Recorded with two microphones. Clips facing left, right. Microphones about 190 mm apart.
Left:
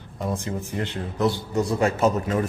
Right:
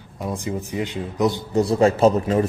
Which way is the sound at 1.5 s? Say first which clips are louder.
Right 7 dB; 30° right (ahead or behind).